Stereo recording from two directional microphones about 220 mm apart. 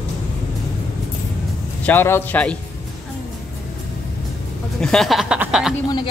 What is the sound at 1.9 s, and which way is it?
Speech, 10° left (ahead or behind).